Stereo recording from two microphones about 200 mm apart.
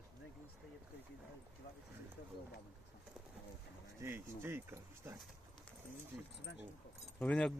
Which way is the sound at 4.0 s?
10° right (ahead or behind).